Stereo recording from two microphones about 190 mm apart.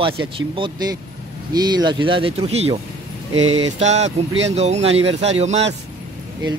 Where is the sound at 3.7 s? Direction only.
35° right (ahead or behind).